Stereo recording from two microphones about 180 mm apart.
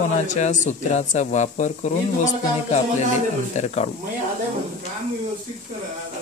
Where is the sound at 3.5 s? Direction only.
35° left (ahead or behind).